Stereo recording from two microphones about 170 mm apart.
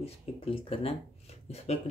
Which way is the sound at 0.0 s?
35° left (ahead or behind).